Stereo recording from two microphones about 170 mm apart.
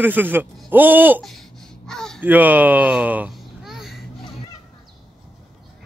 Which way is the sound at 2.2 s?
10° right (ahead or behind).